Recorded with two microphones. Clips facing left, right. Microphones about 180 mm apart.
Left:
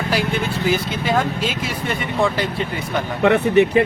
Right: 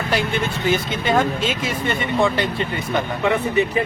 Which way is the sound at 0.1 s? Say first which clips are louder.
Even; 5° left (ahead or behind).